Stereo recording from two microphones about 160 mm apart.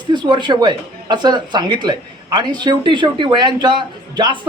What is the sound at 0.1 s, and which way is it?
A man's voice, 30° right (ahead or behind).